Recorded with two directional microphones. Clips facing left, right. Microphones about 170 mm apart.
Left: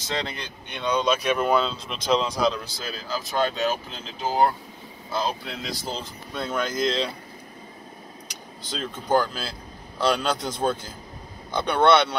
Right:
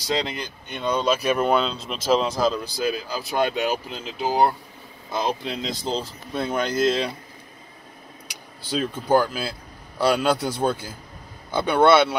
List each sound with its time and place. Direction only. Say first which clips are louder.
0.1 s speech: right 4 dB; 10° right (ahead or behind)
2.8 s speech: right 8 dB; 15° right (ahead or behind)
6.7 s speech: right 5 dB; 10° right (ahead or behind)
8.3 s speech: right 7 dB; 10° right (ahead or behind)